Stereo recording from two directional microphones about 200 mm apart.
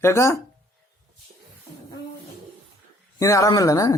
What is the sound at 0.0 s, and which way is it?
Speech, 15° left (ahead or behind).